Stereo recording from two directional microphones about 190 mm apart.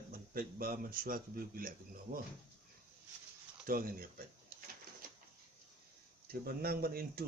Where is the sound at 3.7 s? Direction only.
50° right (ahead or behind).